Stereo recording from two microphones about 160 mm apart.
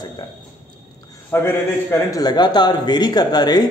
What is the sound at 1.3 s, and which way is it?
A man's voice, 15° left (ahead or behind).